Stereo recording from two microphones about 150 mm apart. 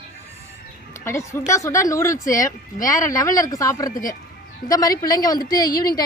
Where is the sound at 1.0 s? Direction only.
20° left (ahead or behind).